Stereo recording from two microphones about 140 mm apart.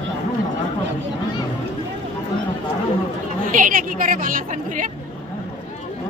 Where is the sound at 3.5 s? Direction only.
75° right (ahead or behind).